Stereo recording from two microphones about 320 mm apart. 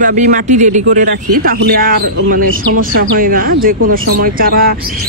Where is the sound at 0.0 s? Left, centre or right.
Right.